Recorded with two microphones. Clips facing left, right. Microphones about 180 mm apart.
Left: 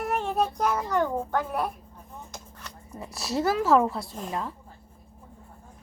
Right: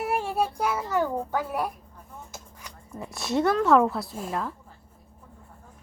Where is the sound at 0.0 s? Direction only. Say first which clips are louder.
Even; 10° right (ahead or behind).